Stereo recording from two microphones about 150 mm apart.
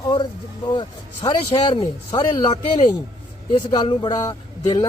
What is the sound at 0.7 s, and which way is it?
Speech, 30° left (ahead or behind).